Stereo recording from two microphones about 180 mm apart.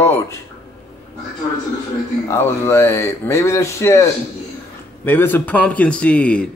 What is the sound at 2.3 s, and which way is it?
Speech, 15° left (ahead or behind).